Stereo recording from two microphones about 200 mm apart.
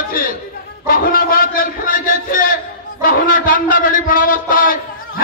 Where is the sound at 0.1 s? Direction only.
45° left (ahead or behind).